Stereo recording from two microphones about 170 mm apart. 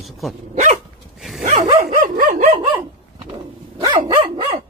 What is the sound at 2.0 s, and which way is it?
Dog, 55° right (ahead or behind).